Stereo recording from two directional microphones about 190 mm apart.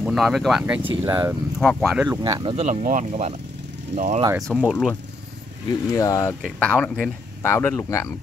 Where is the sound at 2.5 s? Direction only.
35° right (ahead or behind).